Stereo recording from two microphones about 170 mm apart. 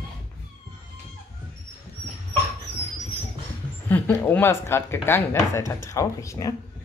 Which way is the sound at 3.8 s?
10° left (ahead or behind).